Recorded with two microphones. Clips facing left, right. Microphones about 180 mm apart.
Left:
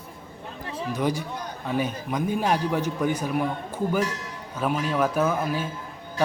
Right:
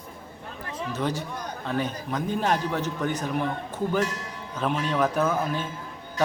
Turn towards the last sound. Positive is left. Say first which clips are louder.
# left 1 dB
turn(degrees=10)  # may be behind; listen again after turning